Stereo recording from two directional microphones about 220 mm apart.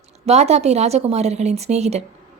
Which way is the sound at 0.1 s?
30° right (ahead or behind).